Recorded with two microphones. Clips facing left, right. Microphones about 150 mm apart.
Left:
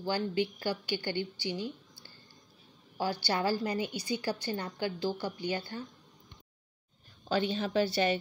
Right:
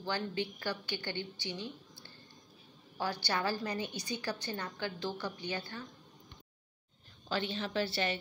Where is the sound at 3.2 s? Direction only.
30° left (ahead or behind).